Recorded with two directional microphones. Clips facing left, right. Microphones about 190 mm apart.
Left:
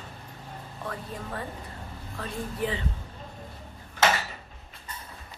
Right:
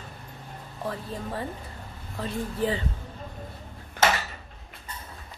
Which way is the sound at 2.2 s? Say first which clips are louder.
Right 3 dB; 35° right (ahead or behind).